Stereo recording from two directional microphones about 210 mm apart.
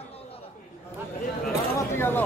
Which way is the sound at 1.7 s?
10° left (ahead or behind).